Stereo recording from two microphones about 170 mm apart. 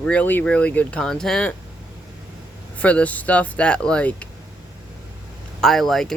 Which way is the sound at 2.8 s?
10° left (ahead or behind).